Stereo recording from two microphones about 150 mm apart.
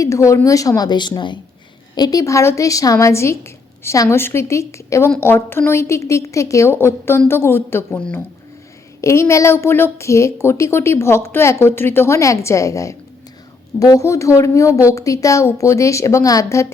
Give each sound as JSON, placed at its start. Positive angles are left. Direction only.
{"t": 0.0, "sound": "a woman's voice", "side_deg": 20}
{"t": 9.0, "sound": "a woman's voice", "side_deg": 20}